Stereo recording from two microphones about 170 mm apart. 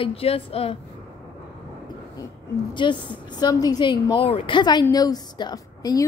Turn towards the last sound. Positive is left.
turn(degrees=20)  # may be behind; listen again after turning